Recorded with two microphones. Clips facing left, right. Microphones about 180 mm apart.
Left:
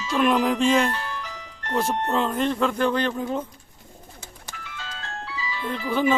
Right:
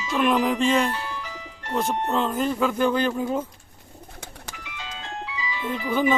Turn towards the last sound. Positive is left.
turn(degrees=0)  # may be behind; listen again after turning